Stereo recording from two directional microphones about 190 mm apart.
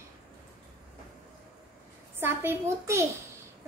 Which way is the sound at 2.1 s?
10° right (ahead or behind).